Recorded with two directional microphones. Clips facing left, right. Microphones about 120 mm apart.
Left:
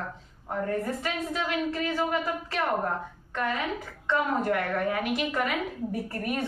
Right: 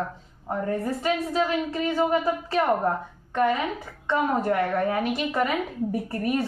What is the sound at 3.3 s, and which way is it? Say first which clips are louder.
A woman's voice: right 6 dB; 30° right (ahead or behind).